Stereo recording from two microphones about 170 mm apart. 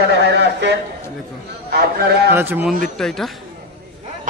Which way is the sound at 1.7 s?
70° right (ahead or behind).